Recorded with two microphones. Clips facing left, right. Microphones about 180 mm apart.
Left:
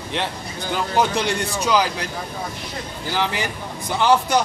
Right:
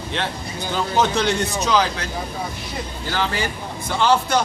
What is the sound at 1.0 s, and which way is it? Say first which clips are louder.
A man's voice: right 1 dB; 10° left (ahead or behind).